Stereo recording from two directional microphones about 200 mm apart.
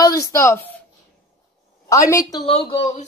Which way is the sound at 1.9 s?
15° left (ahead or behind).